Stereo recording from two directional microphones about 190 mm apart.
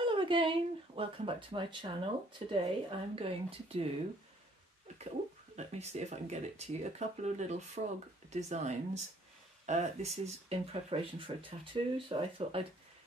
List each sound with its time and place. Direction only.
0.0 s speech: 25° right (ahead or behind)
5.7 s speech: 35° right (ahead or behind)